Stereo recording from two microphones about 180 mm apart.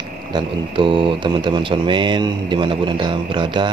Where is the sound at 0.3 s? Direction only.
25° right (ahead or behind).